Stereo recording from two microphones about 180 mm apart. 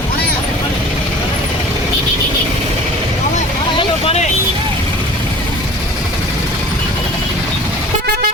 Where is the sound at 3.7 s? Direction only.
35° left (ahead or behind).